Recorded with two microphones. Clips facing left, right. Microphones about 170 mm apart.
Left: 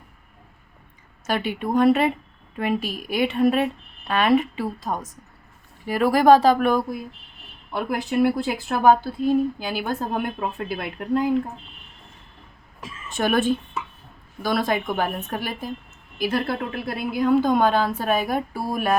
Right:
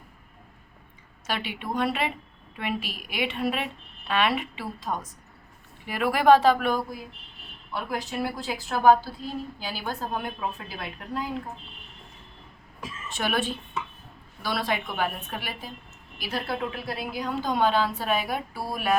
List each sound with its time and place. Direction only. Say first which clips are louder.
1.3 s a woman's voice: left 8 dB; 45° left (ahead or behind)
7.7 s a woman's voice: left 6 dB; 55° left (ahead or behind)
13.1 s a woman's voice: left 7 dB; 50° left (ahead or behind)